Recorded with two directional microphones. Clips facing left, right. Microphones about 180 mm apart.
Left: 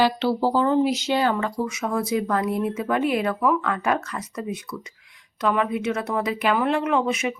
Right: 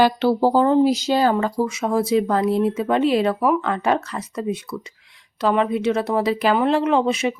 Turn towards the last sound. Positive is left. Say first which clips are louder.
# right 4 dB
turn(degrees=-30)  # may be behind; listen again after turning